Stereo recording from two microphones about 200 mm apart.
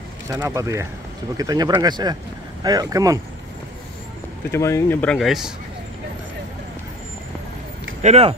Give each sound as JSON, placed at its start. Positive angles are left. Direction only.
{"t": 0.3, "sound": "speech", "side_deg": -15}
{"t": 4.5, "sound": "speech", "side_deg": 15}
{"t": 8.0, "sound": "speech", "side_deg": -30}